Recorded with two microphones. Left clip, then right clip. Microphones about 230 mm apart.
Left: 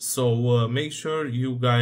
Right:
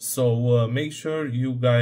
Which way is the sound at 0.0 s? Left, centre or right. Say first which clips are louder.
Right 1 dB; centre.